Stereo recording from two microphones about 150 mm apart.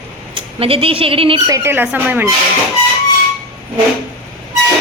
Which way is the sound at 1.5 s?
20° right (ahead or behind).